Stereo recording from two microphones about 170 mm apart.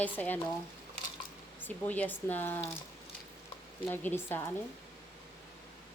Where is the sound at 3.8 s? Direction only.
10° left (ahead or behind).